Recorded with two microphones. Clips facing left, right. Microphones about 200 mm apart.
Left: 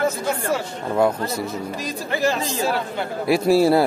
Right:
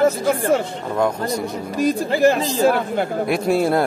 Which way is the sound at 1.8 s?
55° right (ahead or behind).